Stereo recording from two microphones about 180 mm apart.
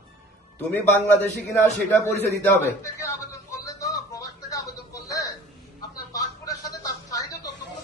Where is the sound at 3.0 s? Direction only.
15° left (ahead or behind).